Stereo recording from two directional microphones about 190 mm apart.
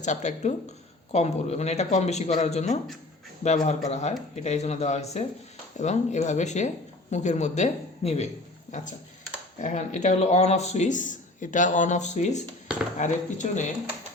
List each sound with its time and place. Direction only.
0.0 s speech: 40° left (ahead or behind)